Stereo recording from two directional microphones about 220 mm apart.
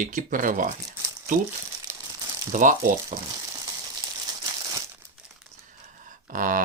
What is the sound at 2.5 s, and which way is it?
Speech, 35° right (ahead or behind).